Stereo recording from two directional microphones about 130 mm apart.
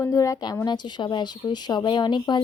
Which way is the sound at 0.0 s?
25° left (ahead or behind).